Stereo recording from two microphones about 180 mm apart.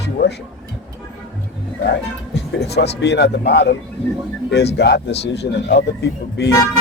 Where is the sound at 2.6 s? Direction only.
65° left (ahead or behind).